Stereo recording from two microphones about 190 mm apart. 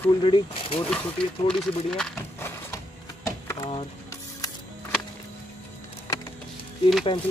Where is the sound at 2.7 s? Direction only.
15° left (ahead or behind).